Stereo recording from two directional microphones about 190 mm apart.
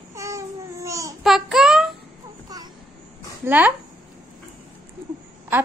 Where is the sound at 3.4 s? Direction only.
10° right (ahead or behind).